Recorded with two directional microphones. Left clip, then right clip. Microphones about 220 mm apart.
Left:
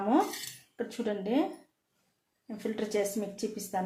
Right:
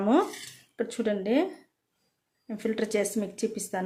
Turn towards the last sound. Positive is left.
turn(degrees=-40)  # may be behind; listen again after turning